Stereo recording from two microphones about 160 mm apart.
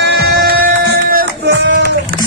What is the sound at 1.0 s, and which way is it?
Music, 75° right (ahead or behind).